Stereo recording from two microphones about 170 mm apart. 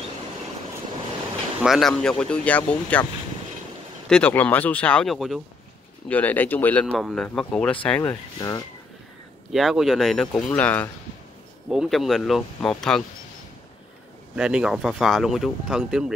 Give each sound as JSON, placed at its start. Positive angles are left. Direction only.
{"t": 1.6, "sound": "speech", "side_deg": 0}
{"t": 4.1, "sound": "speech", "side_deg": 10}
{"t": 8.4, "sound": "speech", "side_deg": 20}
{"t": 9.5, "sound": "speech", "side_deg": 0}
{"t": 11.7, "sound": "speech", "side_deg": 0}
{"t": 14.3, "sound": "speech", "side_deg": -5}